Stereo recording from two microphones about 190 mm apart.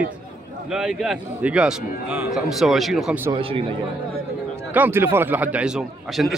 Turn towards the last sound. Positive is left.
turn(degrees=0)  # may be behind; listen again after turning